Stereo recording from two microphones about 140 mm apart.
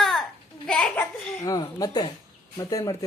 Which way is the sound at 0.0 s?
Centre (ahead or behind).